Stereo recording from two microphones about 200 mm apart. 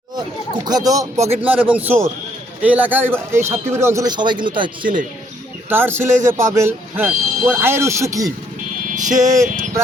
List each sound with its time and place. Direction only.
0.6 s speech: 20° right (ahead or behind)
1.2 s a man's voice: 30° right (ahead or behind)
1.5 s speech: 5° right (ahead or behind); by 4.7 s 25° right (ahead or behind)
4.8 s speech: 40° right (ahead or behind)
5.6 s speech: 10° right (ahead or behind)
9.0 s speech: 40° right (ahead or behind)